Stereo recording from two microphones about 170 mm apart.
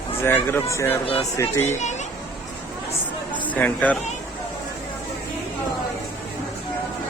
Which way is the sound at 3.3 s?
10° left (ahead or behind).